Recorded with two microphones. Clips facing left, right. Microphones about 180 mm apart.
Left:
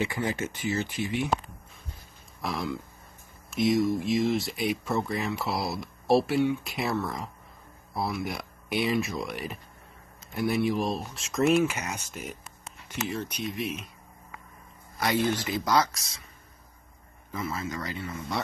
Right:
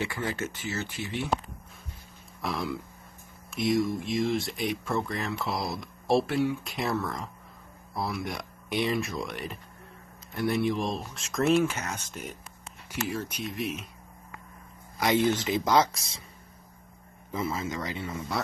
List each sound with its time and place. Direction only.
0.0 s speech: 15° left (ahead or behind)
2.4 s speech: centre (ahead or behind)
13.0 s speech: 5° right (ahead or behind)
15.0 s speech: 15° right (ahead or behind)
17.3 s a man's voice: 25° right (ahead or behind)
17.6 s speech: 15° right (ahead or behind)